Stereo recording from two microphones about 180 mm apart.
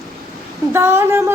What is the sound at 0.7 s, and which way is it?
Speech, 15° right (ahead or behind).